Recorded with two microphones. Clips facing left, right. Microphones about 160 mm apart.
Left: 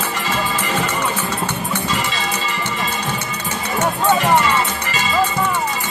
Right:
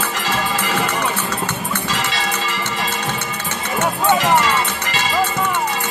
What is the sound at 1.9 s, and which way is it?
Music, 90° right.